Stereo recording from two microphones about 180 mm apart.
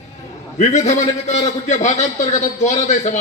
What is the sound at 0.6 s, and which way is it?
A man's voice, 40° left (ahead or behind).